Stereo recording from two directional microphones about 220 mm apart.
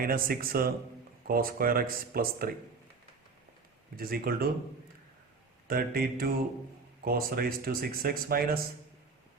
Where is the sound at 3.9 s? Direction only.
45° right (ahead or behind).